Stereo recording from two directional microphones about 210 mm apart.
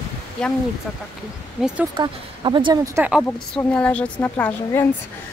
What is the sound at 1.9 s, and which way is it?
Speech, 25° right (ahead or behind).